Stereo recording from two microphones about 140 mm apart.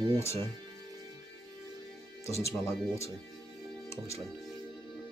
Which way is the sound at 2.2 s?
20° left (ahead or behind).